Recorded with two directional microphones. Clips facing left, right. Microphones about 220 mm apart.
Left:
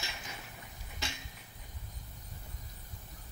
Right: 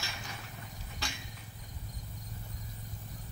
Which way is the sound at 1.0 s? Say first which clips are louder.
Even; 20° left (ahead or behind).